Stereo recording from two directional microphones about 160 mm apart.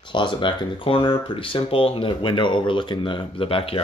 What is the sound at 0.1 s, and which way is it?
Speech, 30° left (ahead or behind).